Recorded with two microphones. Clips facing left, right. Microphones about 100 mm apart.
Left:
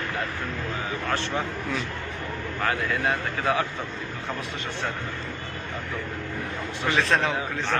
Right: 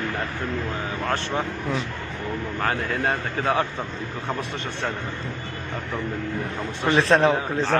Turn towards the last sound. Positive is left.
turn(degrees=-35)  # may be behind; listen again after turning